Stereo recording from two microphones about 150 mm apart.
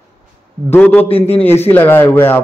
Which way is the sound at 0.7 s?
10° left (ahead or behind).